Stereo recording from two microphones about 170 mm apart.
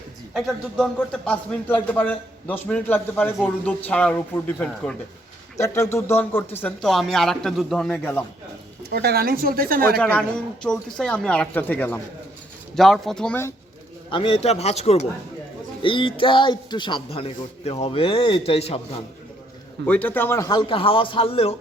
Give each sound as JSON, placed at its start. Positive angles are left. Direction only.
{"t": 0.3, "sound": "a woman's voice", "side_deg": 0}
{"t": 5.5, "sound": "speech", "side_deg": 20}
{"t": 8.9, "sound": "a woman's voice", "side_deg": -70}
{"t": 10.0, "sound": "a woman's voice", "side_deg": 5}
{"t": 14.1, "sound": "a man's voice", "side_deg": 30}
{"t": 19.8, "sound": "speech", "side_deg": 10}